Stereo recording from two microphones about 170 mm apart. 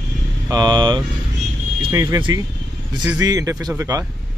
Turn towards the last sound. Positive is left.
turn(degrees=-20)  # may be behind; listen again after turning